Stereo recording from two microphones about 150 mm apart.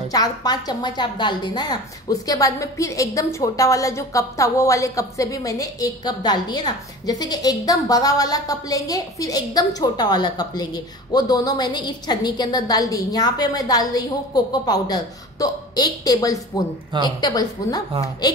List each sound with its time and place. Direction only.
0.1 s a woman's voice: 25° left (ahead or behind)